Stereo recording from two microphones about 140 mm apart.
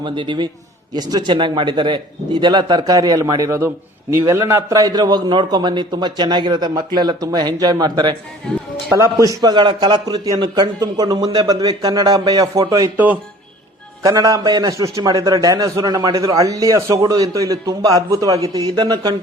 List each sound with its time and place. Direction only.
0.0 s a man's voice: 35° right (ahead or behind)
9.1 s a man's voice: 25° right (ahead or behind)
14.0 s a man's voice: 25° right (ahead or behind)